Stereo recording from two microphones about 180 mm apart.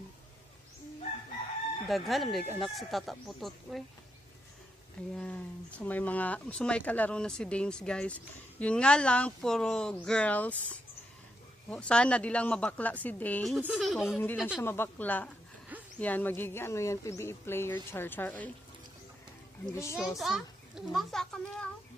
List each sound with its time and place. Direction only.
1.9 s a child's voice: centre (ahead or behind)
5.1 s speech: 5° left (ahead or behind)
13.6 s a child's voice: 5° right (ahead or behind)
14.6 s speech: 15° left (ahead or behind)
19.7 s speech: 15° left (ahead or behind)
20.0 s a child's voice: centre (ahead or behind)